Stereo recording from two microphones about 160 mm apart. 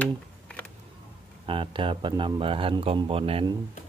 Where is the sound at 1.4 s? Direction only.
30° right (ahead or behind).